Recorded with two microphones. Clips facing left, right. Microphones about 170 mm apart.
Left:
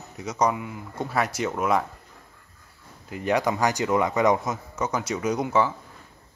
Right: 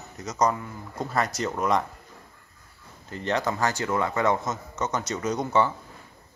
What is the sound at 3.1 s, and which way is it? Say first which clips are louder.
Speech: left 3 dB; 10° left (ahead or behind).